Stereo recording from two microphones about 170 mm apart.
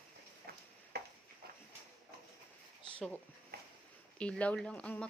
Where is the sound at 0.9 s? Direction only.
70° right (ahead or behind).